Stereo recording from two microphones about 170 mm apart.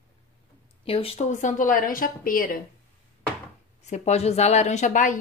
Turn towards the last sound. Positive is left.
turn(degrees=50)  # may be behind; listen again after turning